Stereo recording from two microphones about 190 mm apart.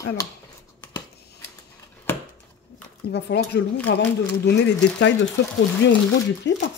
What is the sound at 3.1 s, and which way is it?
Speech, 65° left (ahead or behind).